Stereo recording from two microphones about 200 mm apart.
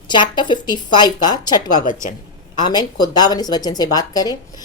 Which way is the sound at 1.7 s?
40° left (ahead or behind).